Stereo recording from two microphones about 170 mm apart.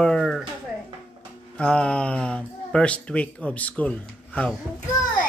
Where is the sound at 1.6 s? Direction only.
5° left (ahead or behind).